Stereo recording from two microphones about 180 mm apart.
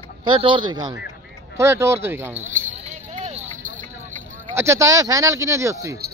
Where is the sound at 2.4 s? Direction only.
45° right (ahead or behind).